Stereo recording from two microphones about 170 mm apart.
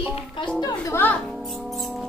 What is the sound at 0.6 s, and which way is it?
Music, 15° left (ahead or behind).